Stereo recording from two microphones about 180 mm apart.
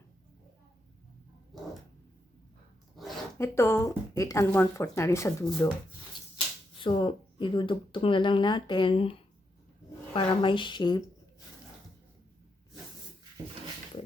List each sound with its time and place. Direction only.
2.9 s a sound: centre (ahead or behind)
3.3 s speech: 15° left (ahead or behind)
6.7 s speech: 25° left (ahead or behind)